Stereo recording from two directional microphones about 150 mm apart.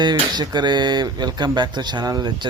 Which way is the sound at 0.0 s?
30° right (ahead or behind).